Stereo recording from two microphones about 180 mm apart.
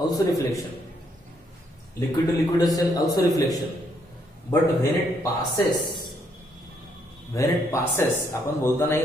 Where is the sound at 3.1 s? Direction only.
20° left (ahead or behind).